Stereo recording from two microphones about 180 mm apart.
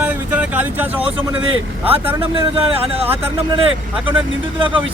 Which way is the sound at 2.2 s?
30° right (ahead or behind).